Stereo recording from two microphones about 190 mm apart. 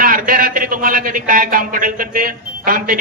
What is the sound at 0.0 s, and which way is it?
A man's voice, 45° right (ahead or behind).